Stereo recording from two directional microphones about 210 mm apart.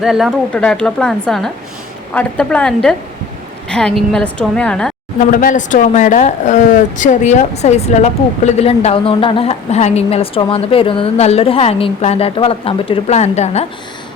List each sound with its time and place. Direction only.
0.0 s speech: centre (ahead or behind)
5.3 s speech: 40° left (ahead or behind)